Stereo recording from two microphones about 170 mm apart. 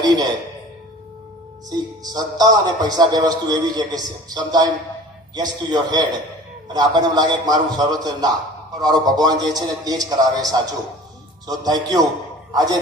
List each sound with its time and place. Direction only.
0.0 s a man's voice: 25° right (ahead or behind)
1.7 s a man's voice: 25° right (ahead or behind)